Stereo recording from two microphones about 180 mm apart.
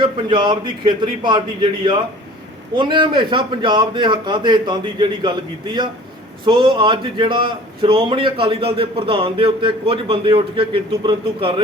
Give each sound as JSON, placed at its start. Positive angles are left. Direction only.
{"t": 0.0, "sound": "a man's voice", "side_deg": -25}